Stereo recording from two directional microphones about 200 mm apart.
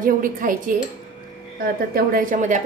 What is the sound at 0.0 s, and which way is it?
Speech, 45° right (ahead or behind).